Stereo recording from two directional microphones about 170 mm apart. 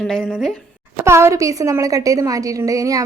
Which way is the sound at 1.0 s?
15° right (ahead or behind).